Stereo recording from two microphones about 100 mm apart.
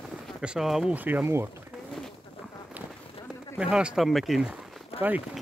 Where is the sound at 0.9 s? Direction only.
15° right (ahead or behind).